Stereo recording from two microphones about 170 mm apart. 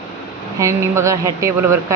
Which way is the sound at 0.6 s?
15° right (ahead or behind).